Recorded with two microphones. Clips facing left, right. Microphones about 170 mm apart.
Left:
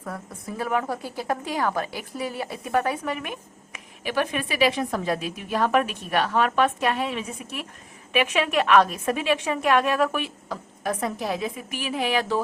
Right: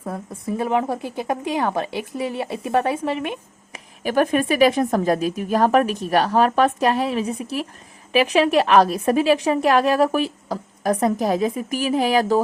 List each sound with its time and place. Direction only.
0.0 s a woman's voice: 25° right (ahead or behind)
4.0 s a woman's voice: 45° right (ahead or behind)